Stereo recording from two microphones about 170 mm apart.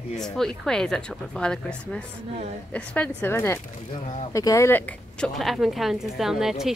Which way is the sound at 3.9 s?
40° left (ahead or behind).